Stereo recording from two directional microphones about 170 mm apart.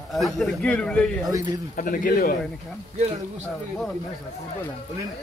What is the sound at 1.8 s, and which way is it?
Speech, 55° left (ahead or behind).